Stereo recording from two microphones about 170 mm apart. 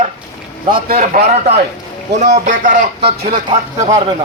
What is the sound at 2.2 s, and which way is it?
Speech, 45° right (ahead or behind).